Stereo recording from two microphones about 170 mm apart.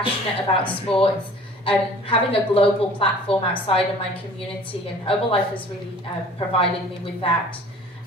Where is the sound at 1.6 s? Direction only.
30° left (ahead or behind).